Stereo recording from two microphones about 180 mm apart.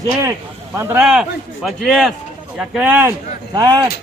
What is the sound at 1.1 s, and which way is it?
A man's voice, centre (ahead or behind).